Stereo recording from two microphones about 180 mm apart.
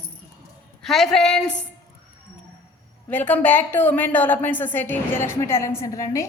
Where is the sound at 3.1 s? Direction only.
10° left (ahead or behind).